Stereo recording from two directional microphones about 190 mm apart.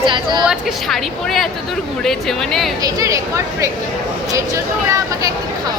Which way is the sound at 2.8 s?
15° right (ahead or behind).